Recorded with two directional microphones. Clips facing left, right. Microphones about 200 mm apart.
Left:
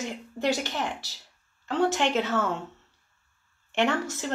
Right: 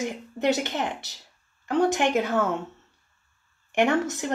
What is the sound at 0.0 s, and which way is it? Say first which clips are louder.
A woman's voice: right 3 dB; 20° right (ahead or behind).